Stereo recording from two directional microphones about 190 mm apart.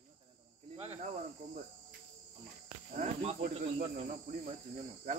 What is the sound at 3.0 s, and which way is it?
Cricket, 30° right (ahead or behind).